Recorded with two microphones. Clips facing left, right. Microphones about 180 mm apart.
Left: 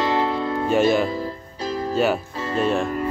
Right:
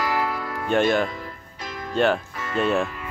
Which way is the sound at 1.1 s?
30° left (ahead or behind).